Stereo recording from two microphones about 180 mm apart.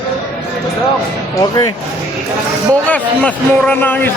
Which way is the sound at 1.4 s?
20° left (ahead or behind).